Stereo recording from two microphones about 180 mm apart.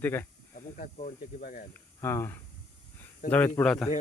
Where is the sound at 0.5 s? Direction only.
45° left (ahead or behind).